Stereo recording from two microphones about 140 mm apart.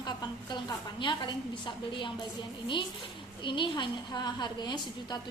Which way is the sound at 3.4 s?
35° left (ahead or behind).